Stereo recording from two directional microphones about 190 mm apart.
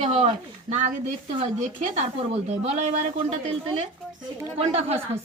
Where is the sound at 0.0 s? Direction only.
35° right (ahead or behind).